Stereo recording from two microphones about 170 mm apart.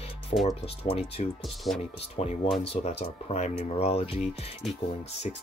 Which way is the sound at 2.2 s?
40° left (ahead or behind).